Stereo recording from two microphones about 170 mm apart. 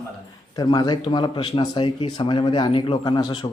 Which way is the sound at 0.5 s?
25° left (ahead or behind).